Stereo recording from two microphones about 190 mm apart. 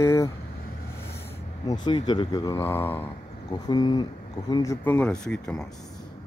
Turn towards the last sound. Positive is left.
turn(degrees=5)  # may be behind; listen again after turning